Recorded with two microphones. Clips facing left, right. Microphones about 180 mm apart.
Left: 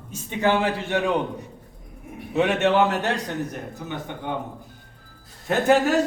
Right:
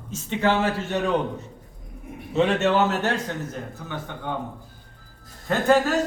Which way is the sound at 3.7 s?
15° left (ahead or behind).